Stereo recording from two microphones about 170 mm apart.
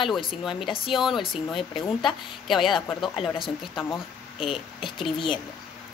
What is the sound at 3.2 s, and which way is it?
Speech, 30° left (ahead or behind).